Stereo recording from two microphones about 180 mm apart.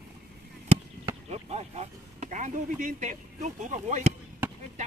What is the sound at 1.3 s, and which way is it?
Speech, 35° right (ahead or behind).